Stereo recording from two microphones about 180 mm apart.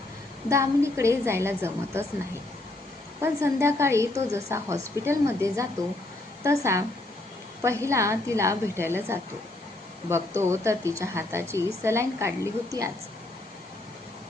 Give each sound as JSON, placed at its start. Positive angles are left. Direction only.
{"t": 0.5, "sound": "a woman's voice", "side_deg": -15}
{"t": 3.2, "sound": "a woman's voice", "side_deg": -15}